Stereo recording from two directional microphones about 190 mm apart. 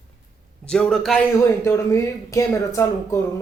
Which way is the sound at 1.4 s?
15° left (ahead or behind).